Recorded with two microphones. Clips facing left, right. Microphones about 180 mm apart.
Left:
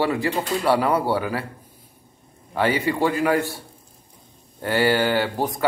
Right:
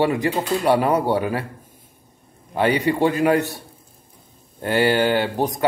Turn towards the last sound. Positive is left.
turn(degrees=-20)  # may be behind; listen again after turning